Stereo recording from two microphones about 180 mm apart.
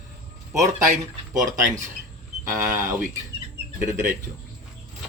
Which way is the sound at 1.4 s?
45° right (ahead or behind).